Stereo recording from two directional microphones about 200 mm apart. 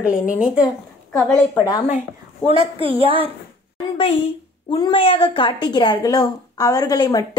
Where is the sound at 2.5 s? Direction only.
25° right (ahead or behind).